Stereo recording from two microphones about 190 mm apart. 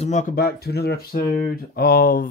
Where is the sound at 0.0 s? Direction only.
40° left (ahead or behind).